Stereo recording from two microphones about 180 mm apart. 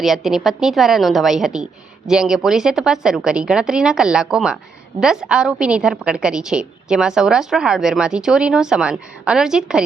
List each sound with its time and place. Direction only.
0.0 s a woman's voice: centre (ahead or behind)